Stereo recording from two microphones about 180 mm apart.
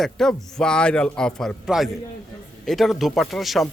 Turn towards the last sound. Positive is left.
turn(degrees=0)  # may be behind; listen again after turning